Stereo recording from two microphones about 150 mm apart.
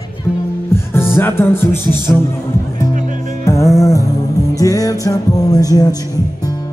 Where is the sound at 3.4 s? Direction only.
20° left (ahead or behind).